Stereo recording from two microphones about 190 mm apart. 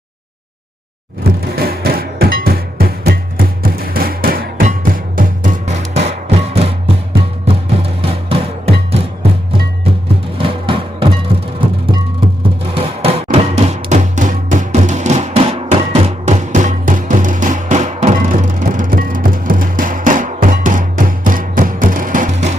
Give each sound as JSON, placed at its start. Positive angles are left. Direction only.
{"t": 1.2, "sound": "music", "side_deg": -55}
{"t": 10.3, "sound": "music", "side_deg": -30}
{"t": 12.7, "sound": "music", "side_deg": -30}